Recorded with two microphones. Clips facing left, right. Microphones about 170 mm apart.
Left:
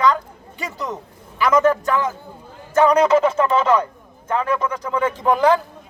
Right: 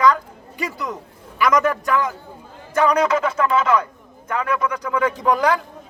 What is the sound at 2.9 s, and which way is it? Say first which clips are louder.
A man's voice: left 4 dB; 30° left (ahead or behind).